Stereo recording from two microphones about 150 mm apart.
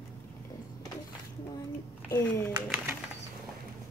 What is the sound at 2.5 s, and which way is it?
Speech, 10° right (ahead or behind).